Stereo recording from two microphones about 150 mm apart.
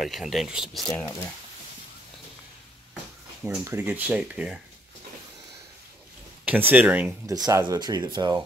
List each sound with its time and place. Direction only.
0.0 s speech: centre (ahead or behind)
3.4 s speech: 15° right (ahead or behind)
6.7 s speech: 10° right (ahead or behind)
7.2 s speech: 25° right (ahead or behind)